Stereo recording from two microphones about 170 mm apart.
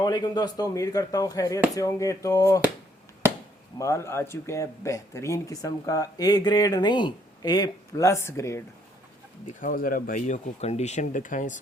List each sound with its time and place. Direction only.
0.0 s speech: 25° left (ahead or behind)
3.8 s speech: 15° left (ahead or behind)
9.5 s speech: 50° left (ahead or behind)